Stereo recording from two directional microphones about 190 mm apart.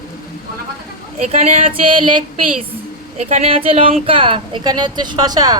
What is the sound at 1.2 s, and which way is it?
Speech, 35° right (ahead or behind).